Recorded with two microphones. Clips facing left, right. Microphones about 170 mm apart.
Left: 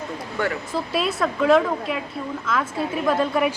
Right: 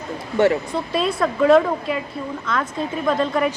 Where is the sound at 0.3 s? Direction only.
25° right (ahead or behind).